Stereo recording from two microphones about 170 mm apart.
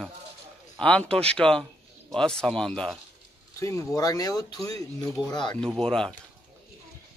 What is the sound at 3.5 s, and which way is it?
Speech, 20° left (ahead or behind).